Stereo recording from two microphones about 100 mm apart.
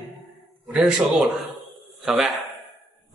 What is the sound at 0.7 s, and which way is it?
A man's voice, 5° right (ahead or behind).